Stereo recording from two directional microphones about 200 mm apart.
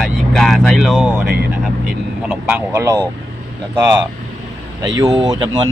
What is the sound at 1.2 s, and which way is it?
Speech, 50° right (ahead or behind).